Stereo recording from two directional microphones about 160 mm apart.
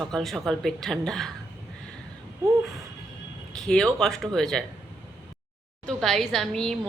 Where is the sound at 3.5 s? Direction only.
5° left (ahead or behind).